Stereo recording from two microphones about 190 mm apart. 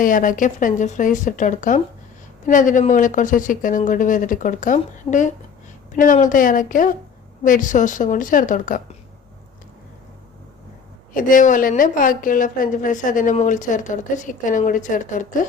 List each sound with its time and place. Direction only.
0.0 s a woman's voice: 45° left (ahead or behind)
11.1 s a woman's voice: 45° left (ahead or behind)